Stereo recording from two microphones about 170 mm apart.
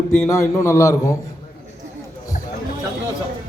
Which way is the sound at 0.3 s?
15° left (ahead or behind).